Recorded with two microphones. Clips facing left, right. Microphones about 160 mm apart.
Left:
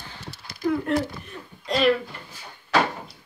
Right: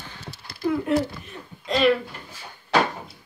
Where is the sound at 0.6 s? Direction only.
5° right (ahead or behind).